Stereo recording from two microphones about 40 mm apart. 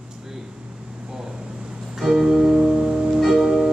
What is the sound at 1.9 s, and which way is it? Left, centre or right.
Music, centre.